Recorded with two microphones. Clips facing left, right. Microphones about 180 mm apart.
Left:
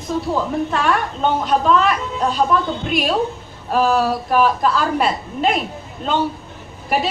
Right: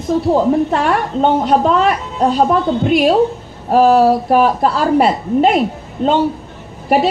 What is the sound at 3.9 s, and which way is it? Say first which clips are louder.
Speech: right 6 dB; 25° right (ahead or behind).